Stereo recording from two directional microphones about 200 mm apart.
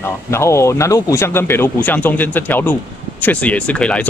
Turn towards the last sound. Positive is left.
turn(degrees=5)  # may be behind; listen again after turning